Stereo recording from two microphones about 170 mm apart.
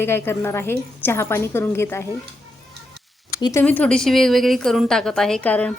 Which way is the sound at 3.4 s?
20° left (ahead or behind).